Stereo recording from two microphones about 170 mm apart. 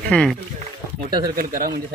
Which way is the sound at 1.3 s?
55° right (ahead or behind).